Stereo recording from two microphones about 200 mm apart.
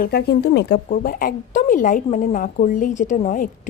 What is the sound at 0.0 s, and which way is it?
A woman's voice, 55° left (ahead or behind).